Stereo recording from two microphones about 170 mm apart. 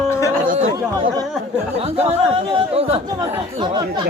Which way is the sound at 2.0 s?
35° right (ahead or behind).